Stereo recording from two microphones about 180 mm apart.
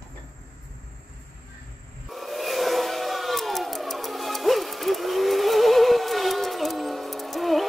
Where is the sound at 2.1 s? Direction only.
Centre (ahead or behind).